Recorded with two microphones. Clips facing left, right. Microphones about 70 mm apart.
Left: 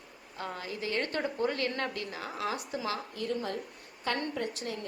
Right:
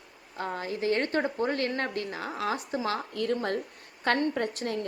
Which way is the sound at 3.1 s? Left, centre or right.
Right.